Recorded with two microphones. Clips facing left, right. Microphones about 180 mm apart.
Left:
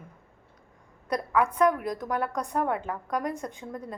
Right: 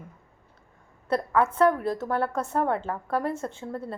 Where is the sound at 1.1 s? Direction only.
25° right (ahead or behind).